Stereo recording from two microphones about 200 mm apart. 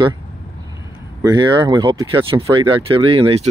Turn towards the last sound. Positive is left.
turn(degrees=-25)  # may be behind; listen again after turning